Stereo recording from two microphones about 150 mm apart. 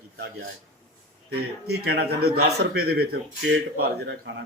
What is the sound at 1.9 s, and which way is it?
A man's voice, 90° right.